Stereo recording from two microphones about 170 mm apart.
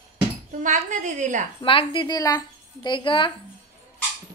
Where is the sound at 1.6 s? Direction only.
30° left (ahead or behind).